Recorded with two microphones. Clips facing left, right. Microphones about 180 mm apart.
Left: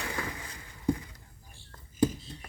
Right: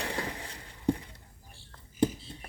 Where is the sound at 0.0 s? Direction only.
35° right (ahead or behind).